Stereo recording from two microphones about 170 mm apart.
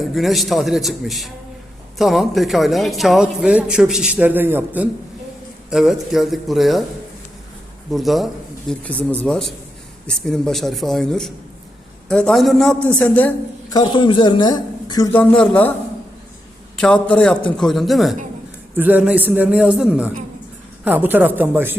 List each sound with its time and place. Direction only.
0.0 s a man's voice: centre (ahead or behind)
7.9 s a man's voice: centre (ahead or behind)
13.7 s a man's voice: 25° left (ahead or behind)
15.1 s speech: 10° left (ahead or behind)
16.7 s a man's voice: 5° left (ahead or behind); by 21.8 s 10° right (ahead or behind)